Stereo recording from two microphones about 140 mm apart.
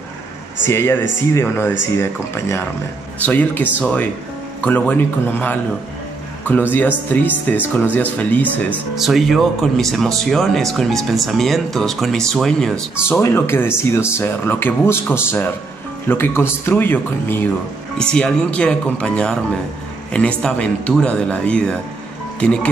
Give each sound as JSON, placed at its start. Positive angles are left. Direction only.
{"t": 0.7, "sound": "speech", "side_deg": 20}
{"t": 6.7, "sound": "speech", "side_deg": 10}
{"t": 8.9, "sound": "speech", "side_deg": 0}
{"t": 13.2, "sound": "speech", "side_deg": 15}